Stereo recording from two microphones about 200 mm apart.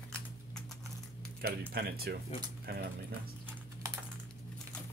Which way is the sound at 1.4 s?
50° right (ahead or behind).